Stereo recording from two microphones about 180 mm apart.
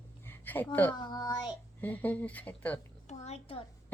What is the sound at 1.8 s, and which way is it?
A woman's voice, 10° left (ahead or behind).